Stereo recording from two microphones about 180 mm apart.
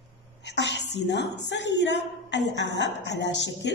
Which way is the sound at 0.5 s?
75° left (ahead or behind).